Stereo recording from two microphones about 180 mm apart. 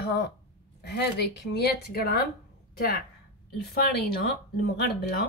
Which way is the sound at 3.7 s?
55° left (ahead or behind).